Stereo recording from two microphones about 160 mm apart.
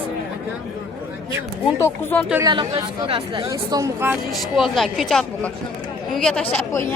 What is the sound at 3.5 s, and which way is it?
Speech, 20° right (ahead or behind).